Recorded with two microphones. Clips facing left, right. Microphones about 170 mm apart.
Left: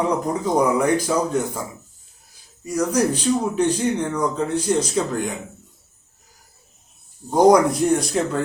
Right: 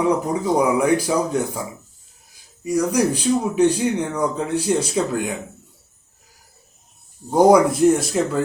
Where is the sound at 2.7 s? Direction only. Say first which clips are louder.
Right 1 dB; 10° right (ahead or behind).